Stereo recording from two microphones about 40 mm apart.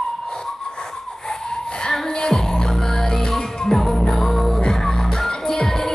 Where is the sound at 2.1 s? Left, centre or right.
Centre.